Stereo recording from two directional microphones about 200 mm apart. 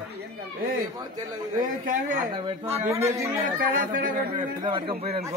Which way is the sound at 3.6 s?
45° right (ahead or behind).